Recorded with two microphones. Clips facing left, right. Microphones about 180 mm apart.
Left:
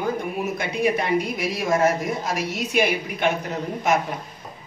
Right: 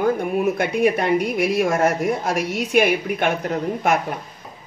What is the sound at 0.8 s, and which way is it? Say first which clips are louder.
A woman's voice: right 2 dB; 55° right (ahead or behind).